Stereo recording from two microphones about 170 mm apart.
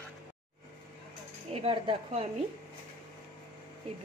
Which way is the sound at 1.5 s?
35° right (ahead or behind).